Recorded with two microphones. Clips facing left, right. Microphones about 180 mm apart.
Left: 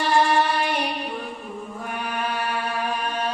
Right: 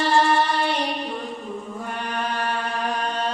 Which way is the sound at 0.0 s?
15° left (ahead or behind).